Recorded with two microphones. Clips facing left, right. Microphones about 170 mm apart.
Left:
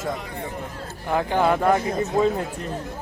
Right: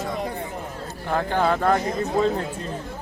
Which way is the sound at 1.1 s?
15° left (ahead or behind).